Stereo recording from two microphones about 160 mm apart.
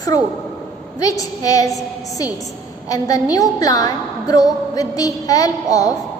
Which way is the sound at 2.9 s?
20° left (ahead or behind).